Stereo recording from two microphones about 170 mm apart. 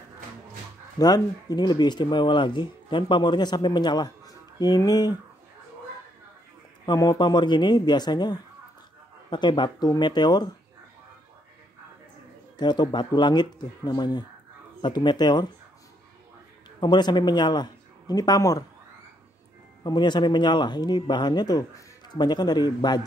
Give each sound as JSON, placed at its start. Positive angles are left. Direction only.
{"t": 0.9, "sound": "speech", "side_deg": 25}
{"t": 6.9, "sound": "speech", "side_deg": 25}
{"t": 12.5, "sound": "speech", "side_deg": 25}
{"t": 16.8, "sound": "speech", "side_deg": 25}
{"t": 19.8, "sound": "speech", "side_deg": 25}